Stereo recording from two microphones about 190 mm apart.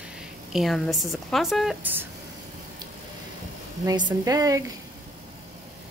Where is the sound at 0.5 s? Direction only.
Centre (ahead or behind).